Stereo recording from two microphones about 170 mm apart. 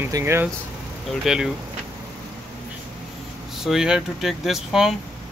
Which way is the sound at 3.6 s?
5° right (ahead or behind).